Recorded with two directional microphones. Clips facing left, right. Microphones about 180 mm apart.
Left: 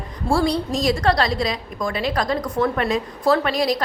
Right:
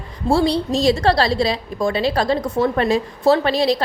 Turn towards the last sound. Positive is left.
turn(degrees=-25)  # may be behind; listen again after turning